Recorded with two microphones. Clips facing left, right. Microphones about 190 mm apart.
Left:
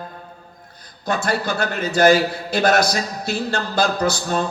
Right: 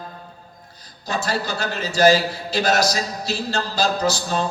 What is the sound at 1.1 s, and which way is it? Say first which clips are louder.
A man's voice: left 3 dB; 55° left (ahead or behind).